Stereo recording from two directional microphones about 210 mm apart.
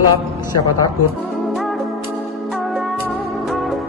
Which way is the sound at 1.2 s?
Centre (ahead or behind).